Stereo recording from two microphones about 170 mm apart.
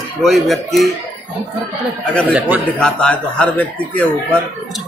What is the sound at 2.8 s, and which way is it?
Speech, 5° left (ahead or behind).